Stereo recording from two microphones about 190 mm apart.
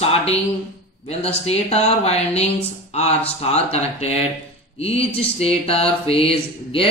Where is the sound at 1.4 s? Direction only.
35° left (ahead or behind).